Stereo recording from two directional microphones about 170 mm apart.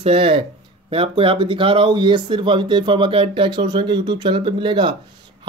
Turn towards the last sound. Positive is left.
turn(degrees=-25)  # may be behind; listen again after turning